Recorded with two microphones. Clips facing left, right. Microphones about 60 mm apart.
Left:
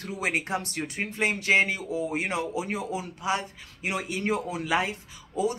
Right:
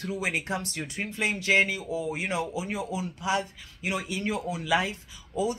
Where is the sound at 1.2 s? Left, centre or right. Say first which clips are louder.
Left 1 dB; left.